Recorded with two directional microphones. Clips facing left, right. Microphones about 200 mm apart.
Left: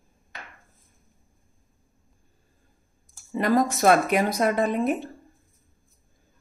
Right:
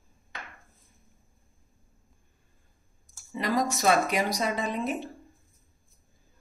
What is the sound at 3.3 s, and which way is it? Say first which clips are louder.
Speech: left 6 dB; 55° left (ahead or behind).